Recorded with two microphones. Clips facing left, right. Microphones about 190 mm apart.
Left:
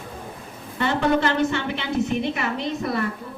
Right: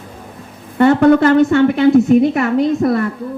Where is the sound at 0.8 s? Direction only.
55° right (ahead or behind).